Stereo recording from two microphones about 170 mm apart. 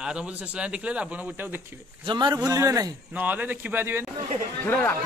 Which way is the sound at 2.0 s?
25° right (ahead or behind).